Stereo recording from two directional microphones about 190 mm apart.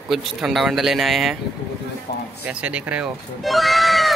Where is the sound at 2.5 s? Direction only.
5° right (ahead or behind).